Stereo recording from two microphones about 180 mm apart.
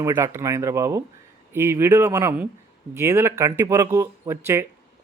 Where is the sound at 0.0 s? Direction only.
15° right (ahead or behind).